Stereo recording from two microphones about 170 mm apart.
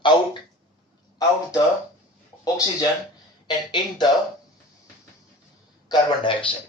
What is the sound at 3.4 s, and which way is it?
Speech, 25° left (ahead or behind).